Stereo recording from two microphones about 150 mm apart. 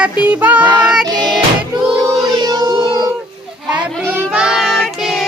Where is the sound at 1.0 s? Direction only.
25° right (ahead or behind).